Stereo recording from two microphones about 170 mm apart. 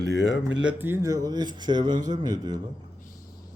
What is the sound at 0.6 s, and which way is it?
Speech, 10° right (ahead or behind).